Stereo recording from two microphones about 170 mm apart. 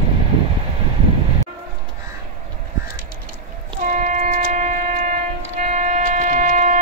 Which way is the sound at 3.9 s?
45° right (ahead or behind).